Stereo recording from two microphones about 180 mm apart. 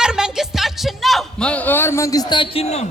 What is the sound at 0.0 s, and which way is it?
Music, 5° right (ahead or behind).